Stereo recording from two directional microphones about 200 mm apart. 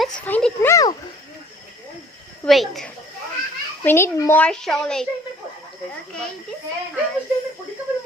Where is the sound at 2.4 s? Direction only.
Centre (ahead or behind).